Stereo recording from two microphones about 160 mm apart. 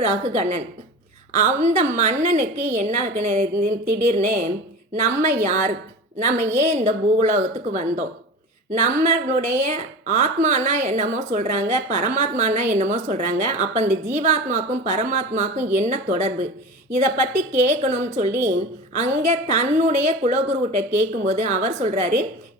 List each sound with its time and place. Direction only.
0.0 s a woman's voice: 45° right (ahead or behind)